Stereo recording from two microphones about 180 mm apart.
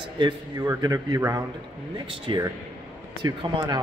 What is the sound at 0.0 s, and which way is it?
A man's voice, 25° right (ahead or behind).